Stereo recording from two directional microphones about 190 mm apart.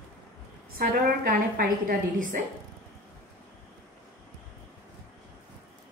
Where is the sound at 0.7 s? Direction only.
50° right (ahead or behind).